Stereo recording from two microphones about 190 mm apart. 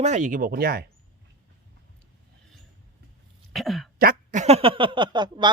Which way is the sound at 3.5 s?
Centre (ahead or behind).